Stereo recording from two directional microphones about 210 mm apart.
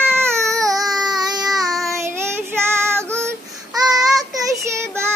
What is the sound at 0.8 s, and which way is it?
Baby cry, centre (ahead or behind).